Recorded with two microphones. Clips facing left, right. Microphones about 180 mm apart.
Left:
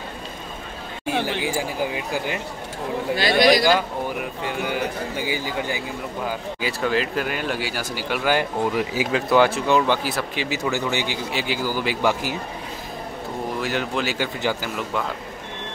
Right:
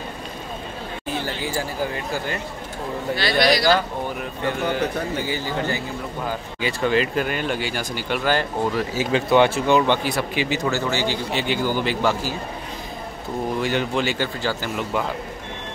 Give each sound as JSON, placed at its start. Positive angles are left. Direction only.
{"t": 1.4, "sound": "a man's voice", "side_deg": 15}
{"t": 3.2, "sound": "a man's voice", "side_deg": 45}
{"t": 3.6, "sound": "a man's voice", "side_deg": 10}
{"t": 6.6, "sound": "speech", "side_deg": 0}
{"t": 9.1, "sound": "speech", "side_deg": 0}
{"t": 10.7, "sound": "a man's voice", "side_deg": 15}
{"t": 13.6, "sound": "speech", "side_deg": 5}